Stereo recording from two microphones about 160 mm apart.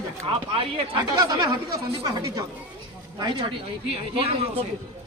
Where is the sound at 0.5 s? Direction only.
35° right (ahead or behind).